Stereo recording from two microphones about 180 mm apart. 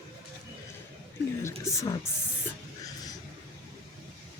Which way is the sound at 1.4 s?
15° left (ahead or behind).